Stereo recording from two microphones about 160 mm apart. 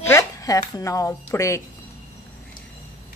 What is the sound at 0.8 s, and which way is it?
Speech, 20° left (ahead or behind).